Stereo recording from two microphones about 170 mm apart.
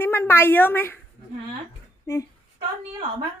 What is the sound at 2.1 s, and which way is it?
Speech, 15° left (ahead or behind).